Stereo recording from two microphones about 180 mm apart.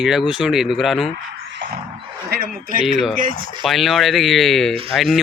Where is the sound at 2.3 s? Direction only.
55° right (ahead or behind).